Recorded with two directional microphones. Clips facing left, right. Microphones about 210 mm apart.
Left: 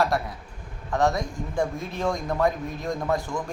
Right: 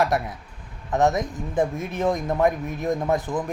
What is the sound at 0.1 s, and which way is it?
Speech, 20° right (ahead or behind).